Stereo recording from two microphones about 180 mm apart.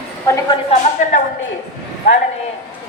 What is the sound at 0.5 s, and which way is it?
Speech, 40° left (ahead or behind).